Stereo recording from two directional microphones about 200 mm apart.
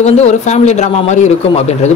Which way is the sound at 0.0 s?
35° left (ahead or behind).